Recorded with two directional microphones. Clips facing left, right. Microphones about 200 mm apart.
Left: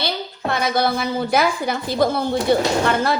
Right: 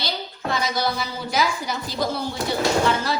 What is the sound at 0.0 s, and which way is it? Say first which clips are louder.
A woman's voice: left 4 dB; 60° left (ahead or behind).